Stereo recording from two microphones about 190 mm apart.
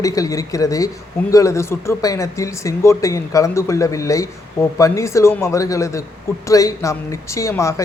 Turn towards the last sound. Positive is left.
turn(degrees=15)  # may be behind; listen again after turning